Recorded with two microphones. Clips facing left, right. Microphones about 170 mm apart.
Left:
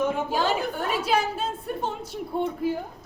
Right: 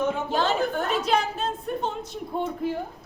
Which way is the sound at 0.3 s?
10° left (ahead or behind).